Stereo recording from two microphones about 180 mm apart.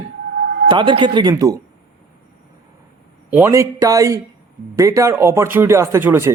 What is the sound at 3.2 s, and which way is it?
Speech, 10° right (ahead or behind).